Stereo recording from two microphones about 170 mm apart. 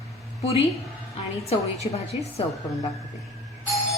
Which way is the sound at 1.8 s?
35° left (ahead or behind).